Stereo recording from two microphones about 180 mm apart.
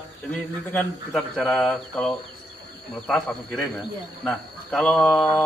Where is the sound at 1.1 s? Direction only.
5° left (ahead or behind).